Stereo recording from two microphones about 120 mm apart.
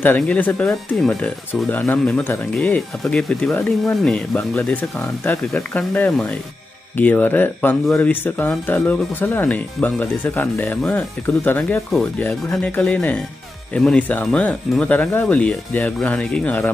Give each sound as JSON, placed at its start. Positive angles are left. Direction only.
{"t": 0.0, "sound": "speech", "side_deg": 15}